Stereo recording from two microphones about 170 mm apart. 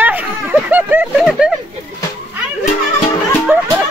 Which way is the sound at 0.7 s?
10° right (ahead or behind).